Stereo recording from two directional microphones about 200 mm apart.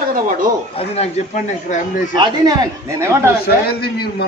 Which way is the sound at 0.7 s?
30° left (ahead or behind).